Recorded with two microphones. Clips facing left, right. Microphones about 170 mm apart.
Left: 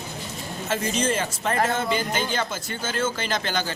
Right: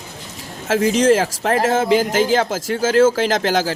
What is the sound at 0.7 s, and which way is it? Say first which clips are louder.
Speech: right 11 dB; 90° right.